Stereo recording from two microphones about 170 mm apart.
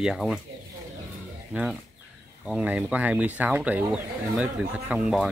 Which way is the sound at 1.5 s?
5° right (ahead or behind).